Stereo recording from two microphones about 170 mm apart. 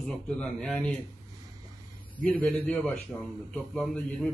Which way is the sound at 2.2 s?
10° left (ahead or behind).